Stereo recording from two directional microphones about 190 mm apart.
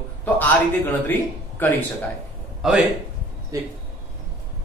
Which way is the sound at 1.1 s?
10° left (ahead or behind).